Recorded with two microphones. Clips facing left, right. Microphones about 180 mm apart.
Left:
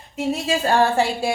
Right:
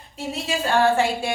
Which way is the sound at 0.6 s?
35° left (ahead or behind).